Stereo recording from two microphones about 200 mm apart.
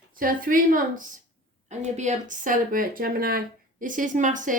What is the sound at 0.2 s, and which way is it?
A woman's voice, 45° right (ahead or behind).